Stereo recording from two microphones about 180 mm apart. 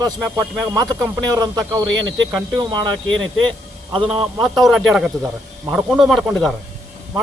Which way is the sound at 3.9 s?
30° right (ahead or behind).